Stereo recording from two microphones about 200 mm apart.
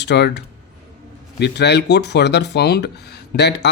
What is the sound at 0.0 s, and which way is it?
Speech, 60° left (ahead or behind).